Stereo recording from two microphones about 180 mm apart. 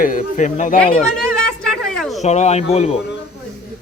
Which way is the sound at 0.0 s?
45° left (ahead or behind).